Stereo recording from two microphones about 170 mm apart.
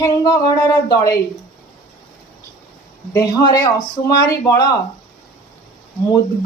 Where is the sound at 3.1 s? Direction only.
20° left (ahead or behind).